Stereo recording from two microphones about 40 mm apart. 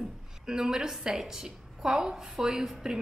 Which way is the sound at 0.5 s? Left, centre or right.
Centre.